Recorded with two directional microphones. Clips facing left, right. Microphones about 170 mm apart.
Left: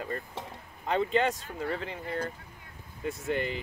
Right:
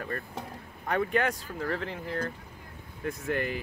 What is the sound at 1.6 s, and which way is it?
Speech, centre (ahead or behind).